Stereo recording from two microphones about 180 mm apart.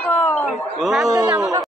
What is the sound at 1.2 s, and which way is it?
Speech, 15° right (ahead or behind).